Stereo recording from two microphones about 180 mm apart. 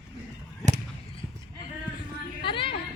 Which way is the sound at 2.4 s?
30° left (ahead or behind).